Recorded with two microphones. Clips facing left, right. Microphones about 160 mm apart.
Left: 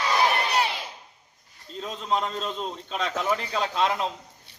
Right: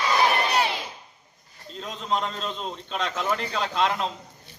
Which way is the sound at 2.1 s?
5° left (ahead or behind).